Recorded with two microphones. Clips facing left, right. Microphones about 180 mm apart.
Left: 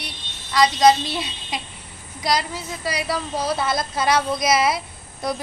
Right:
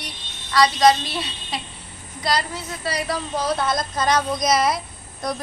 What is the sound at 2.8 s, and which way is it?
Speech, 10° left (ahead or behind).